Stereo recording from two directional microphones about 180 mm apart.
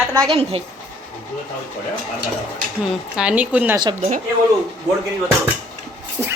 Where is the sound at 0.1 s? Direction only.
20° right (ahead or behind).